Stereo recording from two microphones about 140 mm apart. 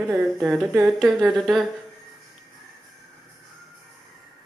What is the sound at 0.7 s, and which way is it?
Speech, 10° right (ahead or behind).